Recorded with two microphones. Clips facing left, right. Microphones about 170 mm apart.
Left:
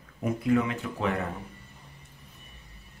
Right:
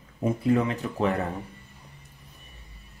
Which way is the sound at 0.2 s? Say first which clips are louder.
Right 2 dB; 35° right (ahead or behind).